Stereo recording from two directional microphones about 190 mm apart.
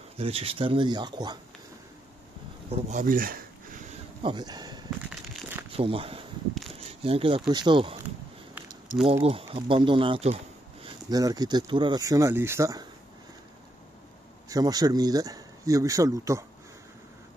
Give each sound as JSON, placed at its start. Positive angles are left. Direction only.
{"t": 0.2, "sound": "speech", "side_deg": -30}
{"t": 2.7, "sound": "speech", "side_deg": -40}
{"t": 4.2, "sound": "speech", "side_deg": -25}
{"t": 6.7, "sound": "a sound", "side_deg": -30}
{"t": 7.5, "sound": "speech", "side_deg": -25}
{"t": 9.0, "sound": "speech", "side_deg": -30}
{"t": 14.5, "sound": "speech", "side_deg": -20}